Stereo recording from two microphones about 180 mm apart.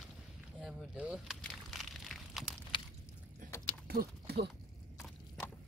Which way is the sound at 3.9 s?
60° right (ahead or behind).